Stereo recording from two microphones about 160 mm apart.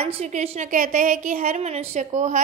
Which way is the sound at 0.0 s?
40° right (ahead or behind).